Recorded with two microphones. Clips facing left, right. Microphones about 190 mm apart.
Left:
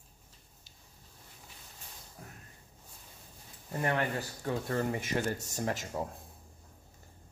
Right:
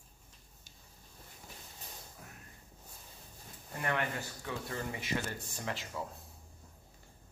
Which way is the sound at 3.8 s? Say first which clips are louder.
Left 4 dB; 30° left (ahead or behind).